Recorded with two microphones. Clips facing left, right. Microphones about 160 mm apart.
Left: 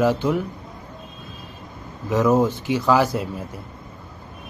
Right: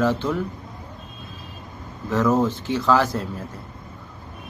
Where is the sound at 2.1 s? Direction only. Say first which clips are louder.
Left 2 dB; 10° left (ahead or behind).